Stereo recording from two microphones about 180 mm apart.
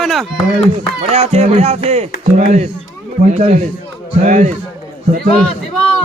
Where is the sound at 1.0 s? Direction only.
35° right (ahead or behind).